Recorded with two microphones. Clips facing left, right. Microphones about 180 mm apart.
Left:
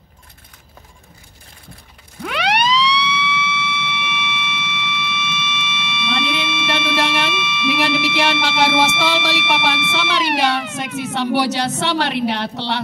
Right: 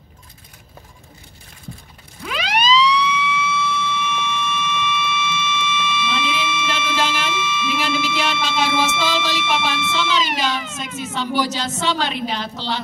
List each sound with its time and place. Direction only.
2.2 s siren: 65° left (ahead or behind)